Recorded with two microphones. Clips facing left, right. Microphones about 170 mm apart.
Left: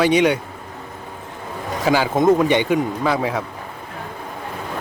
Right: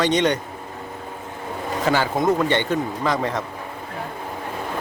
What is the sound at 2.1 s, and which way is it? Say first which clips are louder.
Speech: left 4 dB; 20° left (ahead or behind).